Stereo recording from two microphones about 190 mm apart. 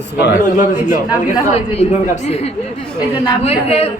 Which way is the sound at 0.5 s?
45° left (ahead or behind).